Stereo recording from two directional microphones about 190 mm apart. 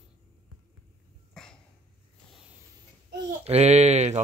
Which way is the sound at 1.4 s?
5° left (ahead or behind).